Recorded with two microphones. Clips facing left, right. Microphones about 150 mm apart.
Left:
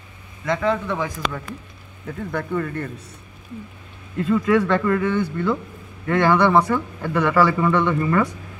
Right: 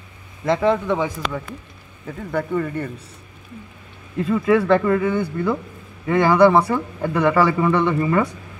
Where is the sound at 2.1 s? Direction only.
5° right (ahead or behind).